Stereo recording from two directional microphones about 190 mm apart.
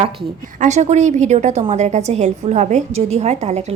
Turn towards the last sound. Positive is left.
turn(degrees=-35)  # may be behind; listen again after turning